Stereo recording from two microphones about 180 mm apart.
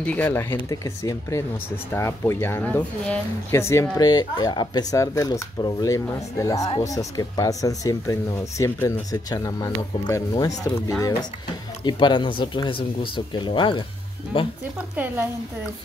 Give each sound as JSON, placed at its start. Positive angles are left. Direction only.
{"t": 0.0, "sound": "speech", "side_deg": 10}